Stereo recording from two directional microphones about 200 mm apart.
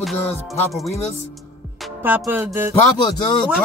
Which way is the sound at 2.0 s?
10° right (ahead or behind).